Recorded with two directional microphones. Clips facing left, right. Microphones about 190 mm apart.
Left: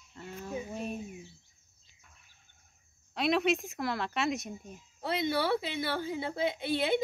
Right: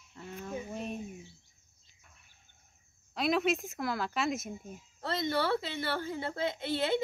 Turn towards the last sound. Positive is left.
turn(degrees=15)  # may be behind; listen again after turning